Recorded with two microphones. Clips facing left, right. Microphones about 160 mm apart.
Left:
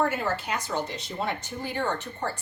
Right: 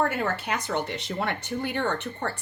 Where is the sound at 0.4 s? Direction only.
60° right (ahead or behind).